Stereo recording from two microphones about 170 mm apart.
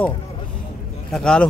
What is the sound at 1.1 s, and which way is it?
Speech, 5° left (ahead or behind).